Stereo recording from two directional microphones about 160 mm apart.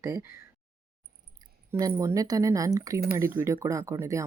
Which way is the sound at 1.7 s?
20° right (ahead or behind).